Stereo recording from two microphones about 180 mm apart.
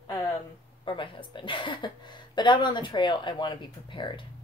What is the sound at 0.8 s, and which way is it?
A woman's voice, 30° left (ahead or behind).